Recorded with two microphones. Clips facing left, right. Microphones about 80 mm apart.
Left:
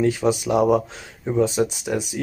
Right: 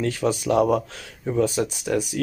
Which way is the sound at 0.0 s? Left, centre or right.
Centre.